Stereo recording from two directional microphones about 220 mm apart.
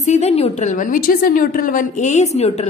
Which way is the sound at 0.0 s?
30° left (ahead or behind).